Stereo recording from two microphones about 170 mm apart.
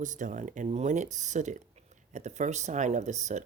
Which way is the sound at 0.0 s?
50° right (ahead or behind).